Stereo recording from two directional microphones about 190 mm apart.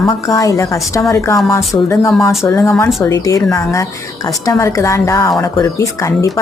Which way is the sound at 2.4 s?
15° left (ahead or behind).